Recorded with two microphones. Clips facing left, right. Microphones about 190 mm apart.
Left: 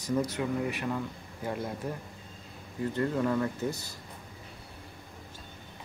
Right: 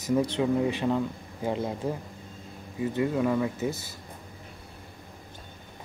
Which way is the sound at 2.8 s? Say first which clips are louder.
Right 3 dB; 10° right (ahead or behind).